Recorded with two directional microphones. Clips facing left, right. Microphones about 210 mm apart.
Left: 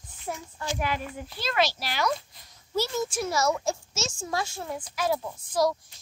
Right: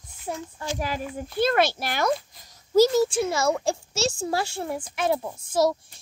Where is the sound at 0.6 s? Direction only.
40° right (ahead or behind).